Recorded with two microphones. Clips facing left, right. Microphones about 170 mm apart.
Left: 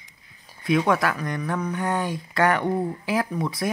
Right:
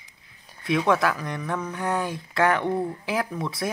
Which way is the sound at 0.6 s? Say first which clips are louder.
Left 1 dB; centre (ahead or behind).